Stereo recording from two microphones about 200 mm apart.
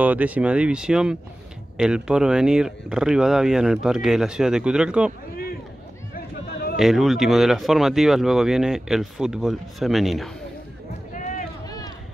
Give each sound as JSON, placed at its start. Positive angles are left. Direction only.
{"t": 0.0, "sound": "speech", "side_deg": -10}
{"t": 6.1, "sound": "a sound", "side_deg": 50}
{"t": 6.8, "sound": "speech", "side_deg": 0}
{"t": 11.1, "sound": "run", "side_deg": 40}